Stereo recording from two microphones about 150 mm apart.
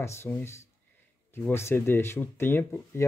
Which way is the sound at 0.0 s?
15° left (ahead or behind).